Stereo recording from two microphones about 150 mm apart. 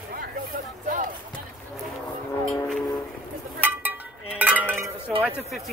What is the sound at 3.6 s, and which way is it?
Speech, 10° right (ahead or behind).